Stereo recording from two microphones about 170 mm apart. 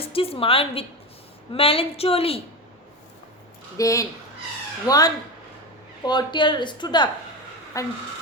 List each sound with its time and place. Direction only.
0.0 s a woman's voice: 35° left (ahead or behind)
3.8 s speech: 20° left (ahead or behind)